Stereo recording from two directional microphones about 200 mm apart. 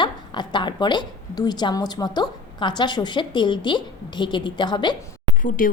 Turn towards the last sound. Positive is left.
turn(degrees=40)  # may be behind; listen again after turning